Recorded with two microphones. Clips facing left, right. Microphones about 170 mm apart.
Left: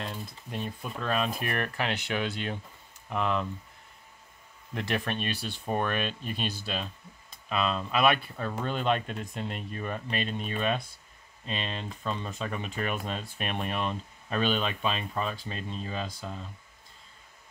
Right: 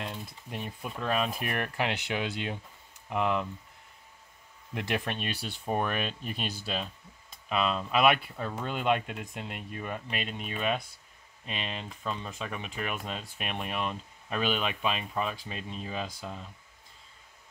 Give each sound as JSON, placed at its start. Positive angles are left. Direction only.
{"t": 0.5, "sound": "speech", "side_deg": -15}
{"t": 4.7, "sound": "speech", "side_deg": -15}
{"t": 6.6, "sound": "speech", "side_deg": -20}